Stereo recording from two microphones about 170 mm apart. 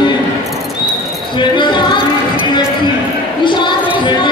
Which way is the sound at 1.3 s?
25° left (ahead or behind).